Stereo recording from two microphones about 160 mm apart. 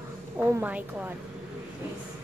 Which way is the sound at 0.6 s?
10° right (ahead or behind).